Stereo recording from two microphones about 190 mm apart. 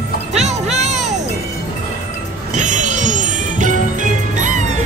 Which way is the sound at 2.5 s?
40° right (ahead or behind).